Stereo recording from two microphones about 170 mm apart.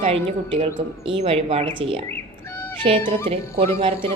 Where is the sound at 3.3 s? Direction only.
35° right (ahead or behind).